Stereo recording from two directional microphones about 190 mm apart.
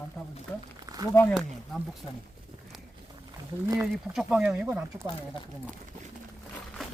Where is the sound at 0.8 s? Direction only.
20° right (ahead or behind).